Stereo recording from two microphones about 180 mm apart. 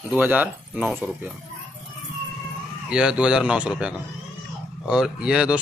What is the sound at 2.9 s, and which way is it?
Speech, 5° right (ahead or behind).